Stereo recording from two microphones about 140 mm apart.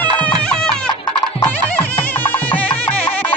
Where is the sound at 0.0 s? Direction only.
10° left (ahead or behind).